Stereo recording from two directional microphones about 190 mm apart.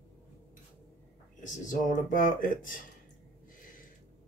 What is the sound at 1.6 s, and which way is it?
Speech, 45° left (ahead or behind).